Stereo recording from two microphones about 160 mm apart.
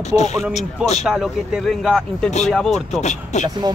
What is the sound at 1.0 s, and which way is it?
Speech, 5° right (ahead or behind).